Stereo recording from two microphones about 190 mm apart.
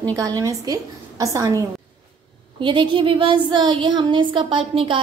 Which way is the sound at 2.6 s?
25° right (ahead or behind).